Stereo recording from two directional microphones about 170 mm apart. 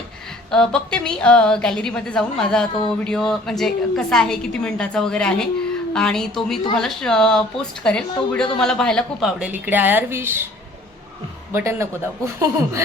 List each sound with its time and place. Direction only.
0.5 s a woman's voice: 5° left (ahead or behind)
9.4 s speech: 10° right (ahead or behind)
11.5 s speech: 15° right (ahead or behind)